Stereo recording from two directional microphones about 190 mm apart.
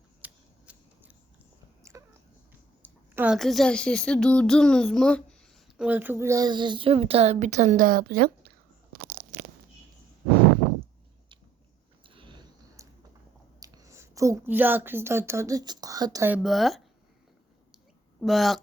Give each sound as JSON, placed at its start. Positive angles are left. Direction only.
{"t": 0.2, "sound": "scissors", "side_deg": -5}
{"t": 1.8, "sound": "biting", "side_deg": -15}
{"t": 2.5, "sound": "a sound", "side_deg": -10}
{"t": 3.3, "sound": "speech", "side_deg": 0}
{"t": 12.0, "sound": "a sound", "side_deg": -25}
{"t": 13.6, "sound": "a woman's voice", "side_deg": -20}
{"t": 16.3, "sound": "speech", "side_deg": 0}
{"t": 18.2, "sound": "speech", "side_deg": 0}